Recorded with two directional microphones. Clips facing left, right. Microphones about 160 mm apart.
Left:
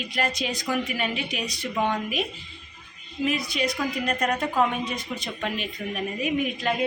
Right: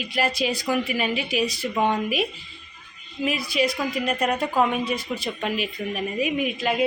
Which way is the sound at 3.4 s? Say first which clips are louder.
Right 3 dB; 5° right (ahead or behind).